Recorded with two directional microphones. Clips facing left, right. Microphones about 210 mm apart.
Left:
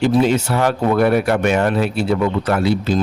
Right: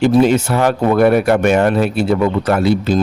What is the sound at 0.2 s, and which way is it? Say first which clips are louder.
Speech: right 3 dB; 50° right (ahead or behind).